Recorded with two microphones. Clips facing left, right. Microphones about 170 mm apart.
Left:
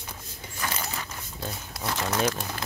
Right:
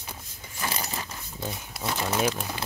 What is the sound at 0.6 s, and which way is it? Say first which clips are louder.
Dog: right 1 dB; 25° right (ahead or behind).